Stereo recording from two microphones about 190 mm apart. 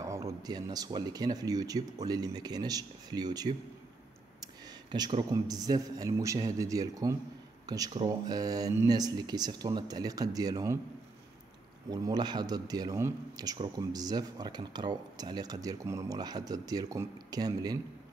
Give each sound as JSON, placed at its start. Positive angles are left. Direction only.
{"t": 0.0, "sound": "a man's voice", "side_deg": -15}
{"t": 4.9, "sound": "a man's voice", "side_deg": -20}
{"t": 11.9, "sound": "a man's voice", "side_deg": -20}